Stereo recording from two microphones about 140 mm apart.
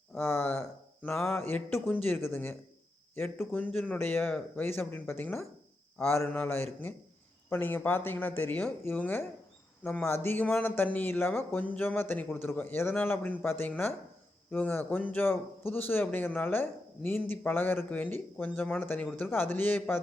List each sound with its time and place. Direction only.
0.2 s speech: 20° left (ahead or behind)